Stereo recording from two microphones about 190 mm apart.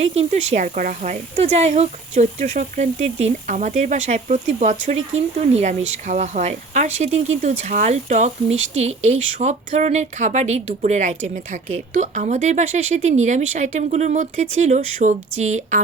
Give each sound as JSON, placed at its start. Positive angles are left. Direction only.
{"t": 0.0, "sound": "speech", "side_deg": -35}